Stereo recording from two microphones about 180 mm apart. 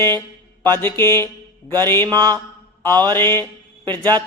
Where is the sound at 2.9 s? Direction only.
25° right (ahead or behind).